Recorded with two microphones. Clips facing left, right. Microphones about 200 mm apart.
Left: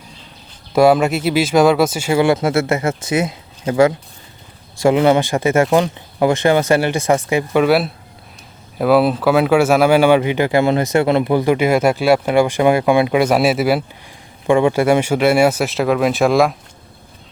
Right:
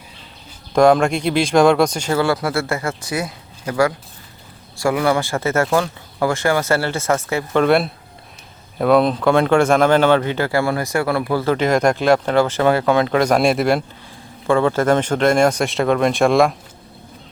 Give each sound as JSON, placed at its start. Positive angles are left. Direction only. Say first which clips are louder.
{"t": 0.7, "sound": "speech", "louder": "left 1 dB", "side_deg": 5}